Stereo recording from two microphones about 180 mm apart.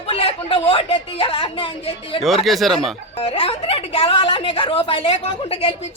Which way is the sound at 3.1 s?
30° left (ahead or behind).